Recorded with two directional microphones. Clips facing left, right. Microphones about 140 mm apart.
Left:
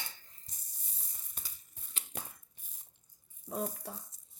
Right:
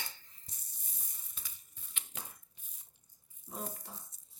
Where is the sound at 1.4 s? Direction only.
50° left (ahead or behind).